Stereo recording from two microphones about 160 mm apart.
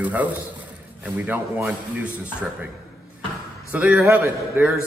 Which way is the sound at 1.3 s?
10° right (ahead or behind).